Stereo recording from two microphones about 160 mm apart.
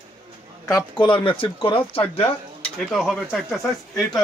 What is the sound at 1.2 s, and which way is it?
Speech, 35° left (ahead or behind).